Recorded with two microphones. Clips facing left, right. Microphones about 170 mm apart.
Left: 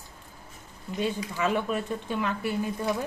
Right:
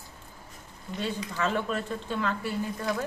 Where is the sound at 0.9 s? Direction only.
15° left (ahead or behind).